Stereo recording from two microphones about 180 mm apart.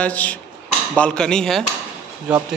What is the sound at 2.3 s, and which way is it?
Speech, 5° right (ahead or behind).